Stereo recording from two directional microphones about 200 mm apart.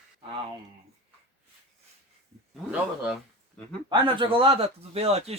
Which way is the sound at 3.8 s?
25° right (ahead or behind).